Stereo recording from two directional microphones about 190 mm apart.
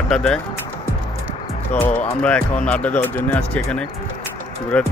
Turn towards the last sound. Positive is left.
turn(degrees=5)  # may be behind; listen again after turning